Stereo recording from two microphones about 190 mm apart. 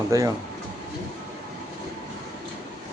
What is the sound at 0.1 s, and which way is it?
Speech, 15° right (ahead or behind).